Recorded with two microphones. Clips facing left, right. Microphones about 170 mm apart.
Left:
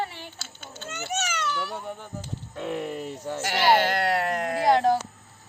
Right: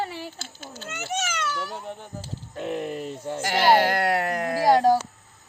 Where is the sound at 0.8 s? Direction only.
Centre (ahead or behind).